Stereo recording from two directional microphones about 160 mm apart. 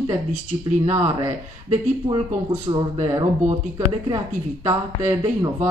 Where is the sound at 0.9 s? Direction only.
20° right (ahead or behind).